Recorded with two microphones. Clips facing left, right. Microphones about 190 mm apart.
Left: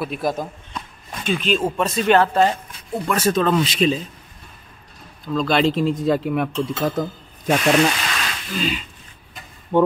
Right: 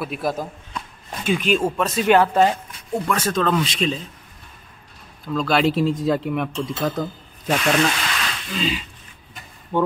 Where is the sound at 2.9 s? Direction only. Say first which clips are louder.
Left 2 dB; 10° left (ahead or behind).